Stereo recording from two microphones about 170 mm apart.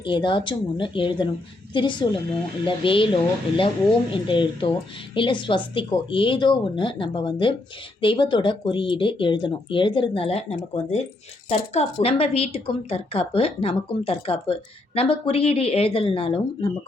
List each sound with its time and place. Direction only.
0.0 s a woman's voice: 30° left (ahead or behind)
4.1 s a woman's voice: 30° left (ahead or behind)